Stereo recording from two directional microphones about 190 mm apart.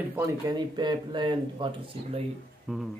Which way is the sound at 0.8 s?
25° right (ahead or behind).